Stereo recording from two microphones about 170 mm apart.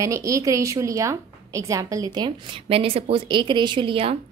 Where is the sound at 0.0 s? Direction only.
20° right (ahead or behind).